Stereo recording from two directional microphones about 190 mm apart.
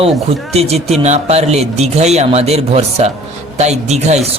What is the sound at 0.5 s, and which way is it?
Speech, 35° right (ahead or behind).